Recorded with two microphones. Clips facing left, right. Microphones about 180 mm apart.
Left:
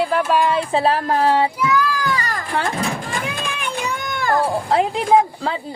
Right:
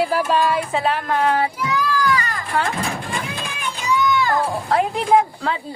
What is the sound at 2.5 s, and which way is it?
Speech, 30° left (ahead or behind).